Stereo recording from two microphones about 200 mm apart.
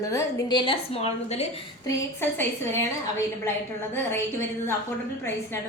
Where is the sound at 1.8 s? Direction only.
15° left (ahead or behind).